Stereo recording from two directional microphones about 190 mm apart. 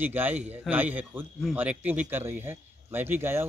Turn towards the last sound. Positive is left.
turn(degrees=-10)  # may be behind; listen again after turning